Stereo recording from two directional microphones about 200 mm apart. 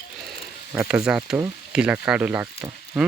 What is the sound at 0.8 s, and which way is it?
Speech, 5° right (ahead or behind).